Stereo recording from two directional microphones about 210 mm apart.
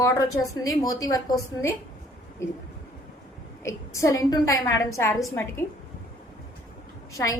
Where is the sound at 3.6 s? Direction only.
15° left (ahead or behind).